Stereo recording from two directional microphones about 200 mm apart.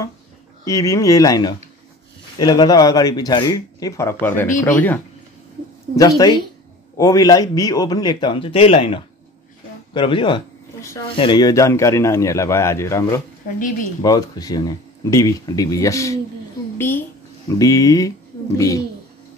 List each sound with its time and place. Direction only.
0.7 s a man's voice: 15° left (ahead or behind)